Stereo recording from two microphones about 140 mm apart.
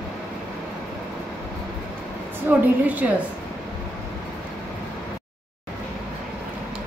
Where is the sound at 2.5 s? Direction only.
10° right (ahead or behind).